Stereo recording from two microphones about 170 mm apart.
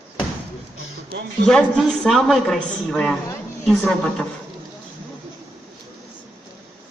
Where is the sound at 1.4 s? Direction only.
5° left (ahead or behind).